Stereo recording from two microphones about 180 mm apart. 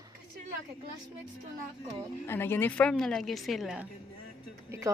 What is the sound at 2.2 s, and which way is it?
A woman's voice, 15° left (ahead or behind).